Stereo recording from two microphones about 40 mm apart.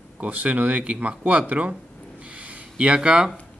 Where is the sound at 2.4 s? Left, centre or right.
Right.